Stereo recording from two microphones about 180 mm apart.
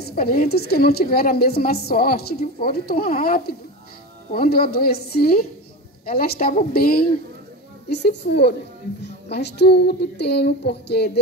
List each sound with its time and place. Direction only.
0.0 s a woman's voice: 55° left (ahead or behind)
7.9 s speech: 70° left (ahead or behind)